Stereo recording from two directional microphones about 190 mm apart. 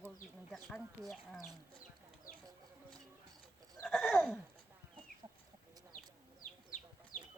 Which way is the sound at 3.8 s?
Centre (ahead or behind).